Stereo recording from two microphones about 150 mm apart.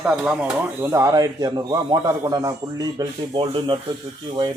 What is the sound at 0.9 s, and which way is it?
A man's voice, 20° right (ahead or behind).